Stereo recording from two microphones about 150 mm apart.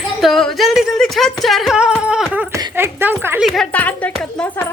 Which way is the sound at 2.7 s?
15° right (ahead or behind).